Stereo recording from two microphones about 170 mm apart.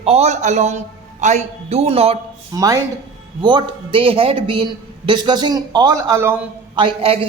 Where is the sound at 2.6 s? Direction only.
20° right (ahead or behind).